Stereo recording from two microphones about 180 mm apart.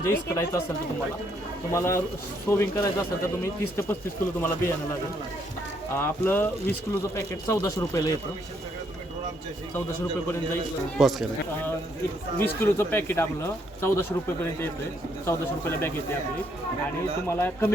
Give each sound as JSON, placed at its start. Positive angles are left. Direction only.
{"t": 0.0, "sound": "speech", "side_deg": 15}
{"t": 1.7, "sound": "speech", "side_deg": 15}
{"t": 6.0, "sound": "speech", "side_deg": 10}
{"t": 10.9, "sound": "speech", "side_deg": 0}
{"t": 12.4, "sound": "speech", "side_deg": 10}
{"t": 17.2, "sound": "speech", "side_deg": 10}